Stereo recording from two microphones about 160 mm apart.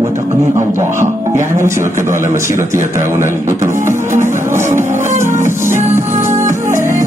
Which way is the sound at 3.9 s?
15° right (ahead or behind).